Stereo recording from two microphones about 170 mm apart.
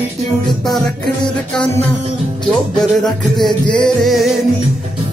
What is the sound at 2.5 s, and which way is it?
Music, 5° left (ahead or behind).